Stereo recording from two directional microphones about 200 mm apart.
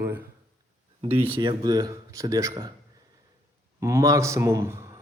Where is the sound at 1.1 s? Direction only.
25° right (ahead or behind).